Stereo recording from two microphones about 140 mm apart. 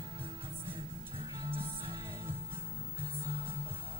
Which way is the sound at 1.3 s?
35° right (ahead or behind).